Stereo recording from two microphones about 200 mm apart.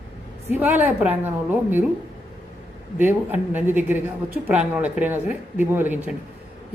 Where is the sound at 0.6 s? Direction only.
10° right (ahead or behind).